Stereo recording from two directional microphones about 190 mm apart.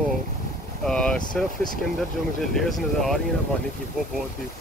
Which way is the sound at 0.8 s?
5° left (ahead or behind).